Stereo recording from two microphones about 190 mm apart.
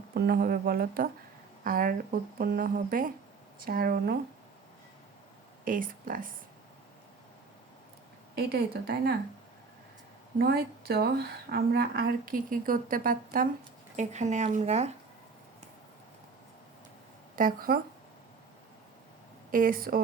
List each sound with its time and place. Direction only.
0.1 s a woman's voice: 55° right (ahead or behind)
5.6 s a woman's voice: 45° right (ahead or behind)
8.4 s a woman's voice: 55° right (ahead or behind)
10.3 s a woman's voice: 55° right (ahead or behind); by 14.9 s 35° right (ahead or behind)
17.3 s a woman's voice: 45° right (ahead or behind)
19.5 s a woman's voice: 45° right (ahead or behind)